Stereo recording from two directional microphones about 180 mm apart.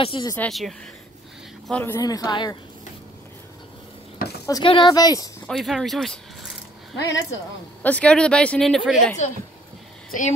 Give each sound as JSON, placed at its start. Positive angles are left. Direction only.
{"t": 0.0, "sound": "speech", "side_deg": 25}
{"t": 0.4, "sound": "speech", "side_deg": 0}
{"t": 2.0, "sound": "speech", "side_deg": 20}
{"t": 4.5, "sound": "speech", "side_deg": 25}
{"t": 5.5, "sound": "speech", "side_deg": 0}
{"t": 7.0, "sound": "speech", "side_deg": 80}
{"t": 7.8, "sound": "speech", "side_deg": 5}